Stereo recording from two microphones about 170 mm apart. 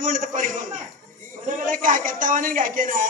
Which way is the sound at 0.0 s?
50° right (ahead or behind).